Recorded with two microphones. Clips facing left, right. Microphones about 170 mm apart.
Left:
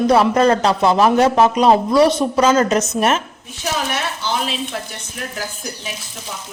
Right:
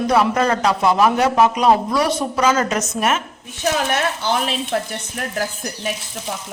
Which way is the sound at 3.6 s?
55° right (ahead or behind).